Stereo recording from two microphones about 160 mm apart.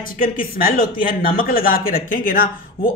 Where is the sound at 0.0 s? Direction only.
65° left (ahead or behind).